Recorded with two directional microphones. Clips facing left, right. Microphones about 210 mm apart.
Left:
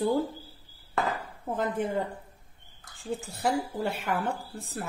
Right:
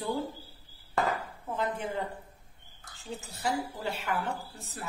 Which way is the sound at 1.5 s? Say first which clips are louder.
Left 4 dB; 45° left (ahead or behind).